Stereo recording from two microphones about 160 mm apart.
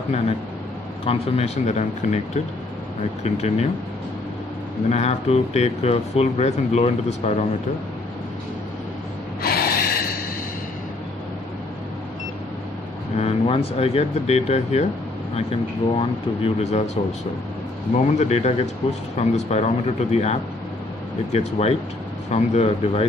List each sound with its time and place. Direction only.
1.0 s speech: 40° left (ahead or behind)
4.8 s speech: 45° left (ahead or behind)
9.4 s gasp: 70° left (ahead or behind)
13.2 s speech: 40° left (ahead or behind)